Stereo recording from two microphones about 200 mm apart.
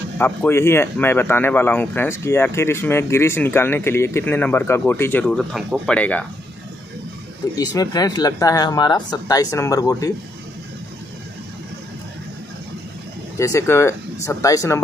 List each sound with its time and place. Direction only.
0.2 s speech: 10° left (ahead or behind)
7.5 s speech: 15° left (ahead or behind)
13.4 s speech: 15° left (ahead or behind)